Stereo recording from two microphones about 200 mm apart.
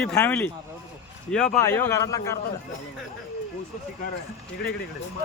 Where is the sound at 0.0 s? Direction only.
10° left (ahead or behind).